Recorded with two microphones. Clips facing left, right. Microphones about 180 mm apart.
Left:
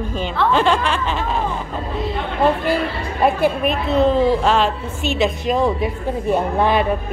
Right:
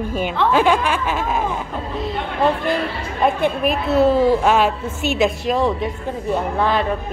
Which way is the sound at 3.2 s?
Centre (ahead or behind).